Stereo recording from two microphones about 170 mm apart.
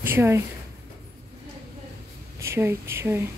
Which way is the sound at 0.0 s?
15° right (ahead or behind).